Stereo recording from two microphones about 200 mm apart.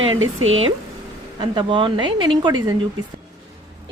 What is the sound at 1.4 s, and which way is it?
A woman's voice, 25° right (ahead or behind).